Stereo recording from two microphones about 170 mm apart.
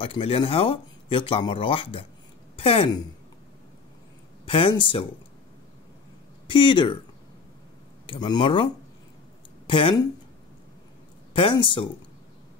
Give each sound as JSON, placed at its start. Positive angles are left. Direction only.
{"t": 0.0, "sound": "a woman's voice", "side_deg": 35}
{"t": 4.5, "sound": "speech", "side_deg": 30}
{"t": 6.4, "sound": "speech", "side_deg": 30}
{"t": 8.1, "sound": "speech", "side_deg": 30}
{"t": 9.7, "sound": "speech", "side_deg": 30}
{"t": 11.3, "sound": "speech", "side_deg": 30}